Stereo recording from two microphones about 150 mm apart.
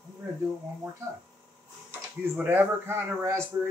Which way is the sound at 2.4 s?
10° right (ahead or behind).